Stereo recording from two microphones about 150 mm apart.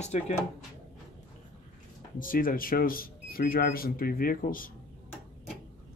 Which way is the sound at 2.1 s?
65° left (ahead or behind).